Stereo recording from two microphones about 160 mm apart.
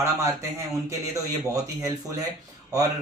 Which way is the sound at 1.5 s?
20° right (ahead or behind).